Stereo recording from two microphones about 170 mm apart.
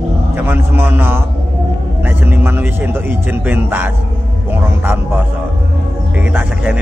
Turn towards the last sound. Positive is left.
turn(degrees=-10)  # may be behind; listen again after turning